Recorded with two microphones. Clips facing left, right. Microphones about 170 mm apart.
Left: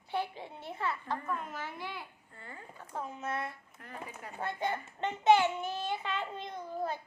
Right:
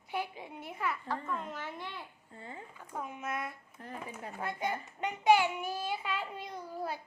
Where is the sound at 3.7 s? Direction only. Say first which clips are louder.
Right 2 dB; 30° right (ahead or behind).